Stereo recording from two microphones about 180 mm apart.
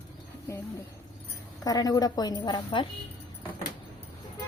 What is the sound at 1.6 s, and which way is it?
A woman's voice, 20° left (ahead or behind).